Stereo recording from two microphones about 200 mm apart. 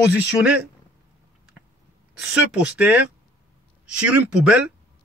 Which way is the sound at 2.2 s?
5° right (ahead or behind).